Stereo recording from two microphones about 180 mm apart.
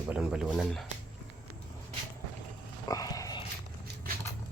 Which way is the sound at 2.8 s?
20° left (ahead or behind).